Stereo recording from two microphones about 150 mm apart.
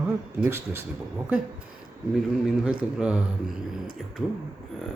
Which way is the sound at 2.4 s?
5° right (ahead or behind).